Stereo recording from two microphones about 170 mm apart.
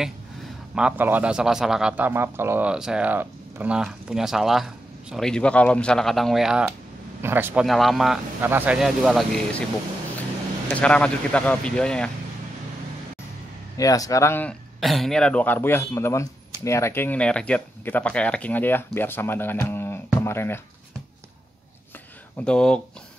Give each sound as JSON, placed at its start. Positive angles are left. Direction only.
{"t": 0.7, "sound": "a man's voice", "side_deg": -10}
{"t": 7.2, "sound": "speech", "side_deg": -15}
{"t": 7.6, "sound": "a man's voice", "side_deg": 0}
{"t": 8.4, "sound": "a man's voice", "side_deg": -10}
{"t": 10.7, "sound": "speech", "side_deg": 5}
{"t": 13.7, "sound": "speech", "side_deg": 20}
{"t": 14.8, "sound": "speech", "side_deg": 0}
{"t": 22.4, "sound": "a man's voice", "side_deg": 5}